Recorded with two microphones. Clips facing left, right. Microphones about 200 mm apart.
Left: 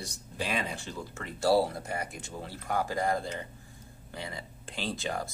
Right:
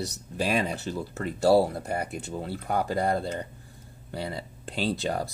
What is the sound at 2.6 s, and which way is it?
Speech, 35° right (ahead or behind).